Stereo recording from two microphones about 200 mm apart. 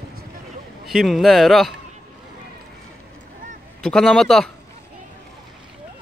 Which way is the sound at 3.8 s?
5° left (ahead or behind).